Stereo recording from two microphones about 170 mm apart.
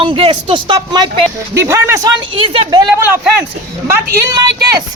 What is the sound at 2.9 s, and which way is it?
Speech, 15° right (ahead or behind).